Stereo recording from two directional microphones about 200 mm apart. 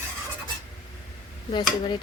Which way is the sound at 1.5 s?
25° left (ahead or behind).